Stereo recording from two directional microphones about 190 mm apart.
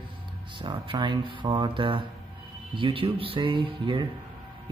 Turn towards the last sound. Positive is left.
turn(degrees=-25)  # may be behind; listen again after turning